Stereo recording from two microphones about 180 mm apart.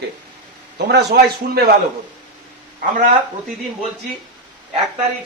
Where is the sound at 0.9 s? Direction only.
70° right (ahead or behind).